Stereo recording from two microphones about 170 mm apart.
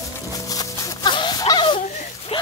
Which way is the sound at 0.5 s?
20° left (ahead or behind).